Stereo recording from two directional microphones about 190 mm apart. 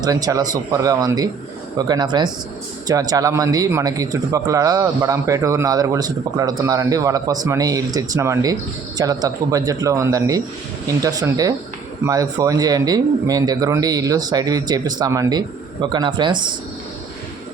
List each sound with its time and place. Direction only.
0.0 s speech: 20° right (ahead or behind)